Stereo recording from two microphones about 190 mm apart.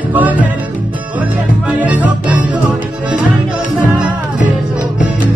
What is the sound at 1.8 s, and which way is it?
Music, 10° right (ahead or behind).